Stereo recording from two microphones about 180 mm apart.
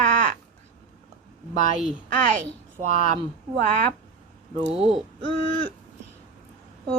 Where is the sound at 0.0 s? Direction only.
45° right (ahead or behind).